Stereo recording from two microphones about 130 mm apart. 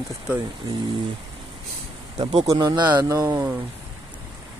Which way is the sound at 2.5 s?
30° right (ahead or behind).